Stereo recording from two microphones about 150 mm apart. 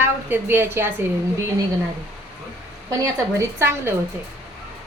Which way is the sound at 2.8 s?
20° right (ahead or behind).